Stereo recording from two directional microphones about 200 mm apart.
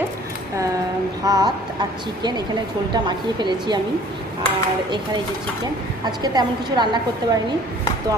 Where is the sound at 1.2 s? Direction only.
20° right (ahead or behind).